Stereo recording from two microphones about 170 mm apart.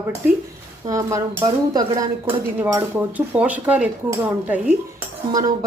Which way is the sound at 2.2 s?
10° right (ahead or behind).